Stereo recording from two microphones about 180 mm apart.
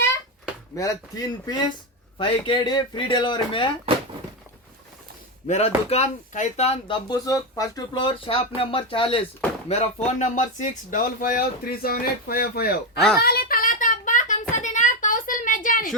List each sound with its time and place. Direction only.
0.8 s speech: 20° left (ahead or behind)
5.5 s speech: 35° left (ahead or behind); by 13.0 s 55° left (ahead or behind)
13.2 s a sound: 55° left (ahead or behind)